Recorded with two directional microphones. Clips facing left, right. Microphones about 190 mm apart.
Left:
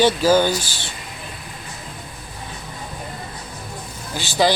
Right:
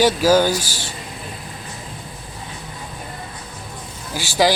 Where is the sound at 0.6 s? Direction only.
40° right (ahead or behind).